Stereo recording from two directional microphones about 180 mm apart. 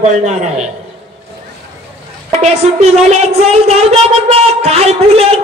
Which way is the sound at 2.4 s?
35° right (ahead or behind).